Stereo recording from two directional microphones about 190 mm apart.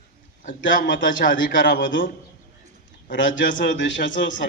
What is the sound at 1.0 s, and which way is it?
Speech, 75° left (ahead or behind).